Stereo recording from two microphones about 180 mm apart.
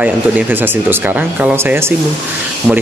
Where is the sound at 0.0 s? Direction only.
10° right (ahead or behind).